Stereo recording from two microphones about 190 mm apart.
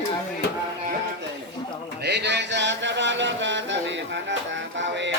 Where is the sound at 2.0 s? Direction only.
60° right (ahead or behind).